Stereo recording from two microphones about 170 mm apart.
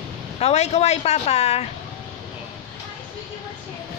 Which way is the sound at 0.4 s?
40° left (ahead or behind).